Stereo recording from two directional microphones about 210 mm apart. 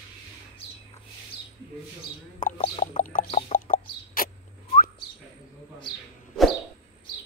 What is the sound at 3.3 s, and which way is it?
Chicken, 30° left (ahead or behind).